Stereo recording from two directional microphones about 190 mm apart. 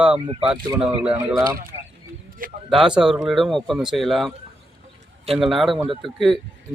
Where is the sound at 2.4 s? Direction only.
45° right (ahead or behind).